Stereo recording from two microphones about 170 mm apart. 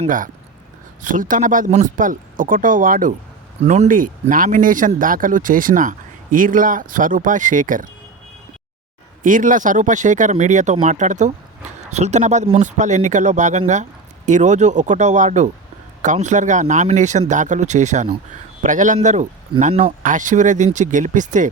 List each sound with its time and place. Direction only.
1.0 s speech: 50° right (ahead or behind)
3.6 s speech: 40° right (ahead or behind)
9.2 s speech: 50° right (ahead or behind)